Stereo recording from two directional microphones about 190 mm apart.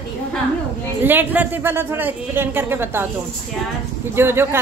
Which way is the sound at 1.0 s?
10° right (ahead or behind).